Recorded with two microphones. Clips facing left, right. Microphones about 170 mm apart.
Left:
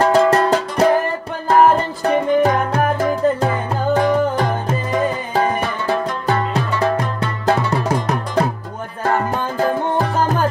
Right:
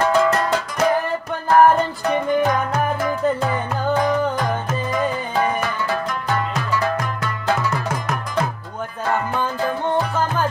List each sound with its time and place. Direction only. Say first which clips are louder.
0.0 s music: left 4 dB; 40° left (ahead or behind)
2.0 s music: left 5 dB; 30° left (ahead or behind)